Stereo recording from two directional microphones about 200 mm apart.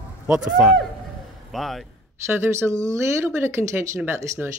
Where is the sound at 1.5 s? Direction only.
Centre (ahead or behind).